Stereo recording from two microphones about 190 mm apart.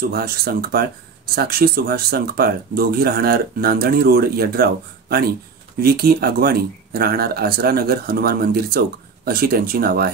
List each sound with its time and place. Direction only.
0.0 s speech: 55° right (ahead or behind)
5.8 s speech: 55° right (ahead or behind)